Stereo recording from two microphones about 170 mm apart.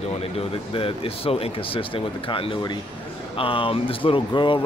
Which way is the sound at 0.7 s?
35° left (ahead or behind).